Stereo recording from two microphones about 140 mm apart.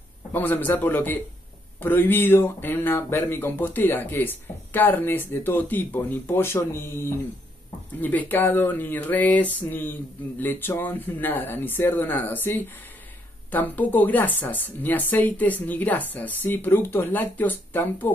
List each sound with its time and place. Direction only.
0.3 s speech: 15° left (ahead or behind)